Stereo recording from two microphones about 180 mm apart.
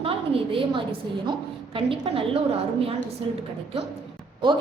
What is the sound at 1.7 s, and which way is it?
Speech, 30° right (ahead or behind).